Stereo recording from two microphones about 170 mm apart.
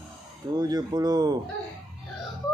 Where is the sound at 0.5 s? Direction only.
25° right (ahead or behind).